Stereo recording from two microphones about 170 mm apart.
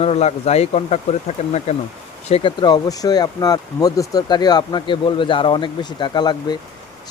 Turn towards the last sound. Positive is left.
turn(degrees=25)  # may be behind; listen again after turning